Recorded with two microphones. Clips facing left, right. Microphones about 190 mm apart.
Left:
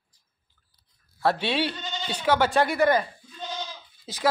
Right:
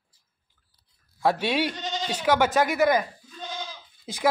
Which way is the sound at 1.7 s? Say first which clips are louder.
Right 3 dB; 90° right.